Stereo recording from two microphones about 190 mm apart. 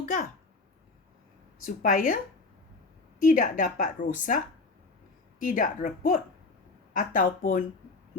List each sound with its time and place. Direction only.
0.0 s speech: 40° left (ahead or behind)
1.6 s a woman's voice: 45° left (ahead or behind)
3.2 s a woman's voice: 45° left (ahead or behind)
5.4 s a woman's voice: 45° left (ahead or behind)